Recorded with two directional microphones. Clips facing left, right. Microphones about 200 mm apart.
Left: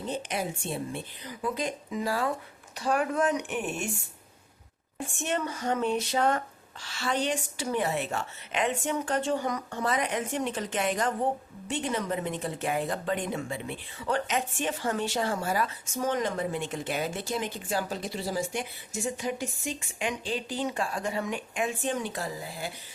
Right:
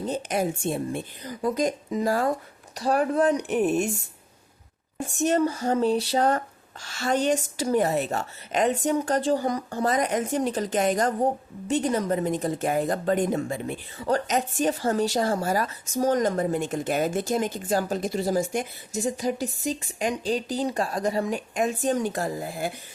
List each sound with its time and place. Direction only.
0.0 s a woman's voice: 45° right (ahead or behind)
4.9 s a woman's voice: 40° right (ahead or behind)